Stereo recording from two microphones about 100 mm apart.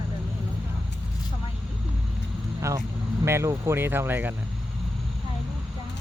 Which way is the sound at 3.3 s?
25° right (ahead or behind).